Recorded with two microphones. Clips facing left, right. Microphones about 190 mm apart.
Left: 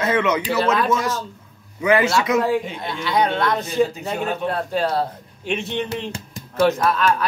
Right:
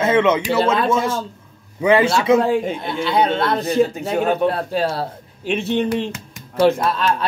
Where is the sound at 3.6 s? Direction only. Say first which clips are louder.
Right 3 dB; 55° right (ahead or behind).